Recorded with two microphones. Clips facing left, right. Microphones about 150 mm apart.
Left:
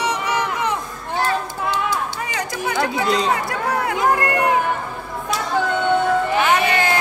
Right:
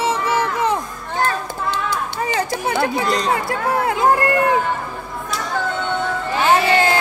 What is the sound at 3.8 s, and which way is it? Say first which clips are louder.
Speech: right 3 dB; 30° right (ahead or behind).